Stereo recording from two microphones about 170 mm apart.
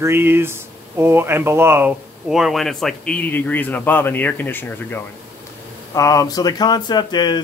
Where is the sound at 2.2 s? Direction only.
Centre (ahead or behind); by 7.4 s 25° left (ahead or behind).